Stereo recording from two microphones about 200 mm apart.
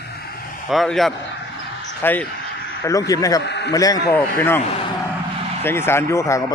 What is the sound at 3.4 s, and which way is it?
Speech, 60° left (ahead or behind).